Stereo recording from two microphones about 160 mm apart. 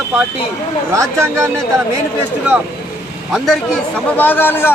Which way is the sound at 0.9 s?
20° right (ahead or behind).